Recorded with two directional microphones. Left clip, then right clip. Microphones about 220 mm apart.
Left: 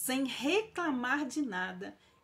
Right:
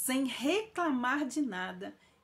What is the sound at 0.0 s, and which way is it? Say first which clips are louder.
Speech: right 1 dB; 5° right (ahead or behind).